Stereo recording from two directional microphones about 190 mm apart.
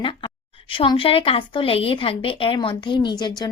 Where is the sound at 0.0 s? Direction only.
25° left (ahead or behind).